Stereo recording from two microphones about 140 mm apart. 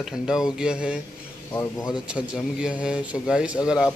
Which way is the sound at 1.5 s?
20° left (ahead or behind).